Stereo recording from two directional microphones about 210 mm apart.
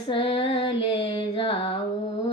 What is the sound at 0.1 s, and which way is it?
Female singing, 25° left (ahead or behind).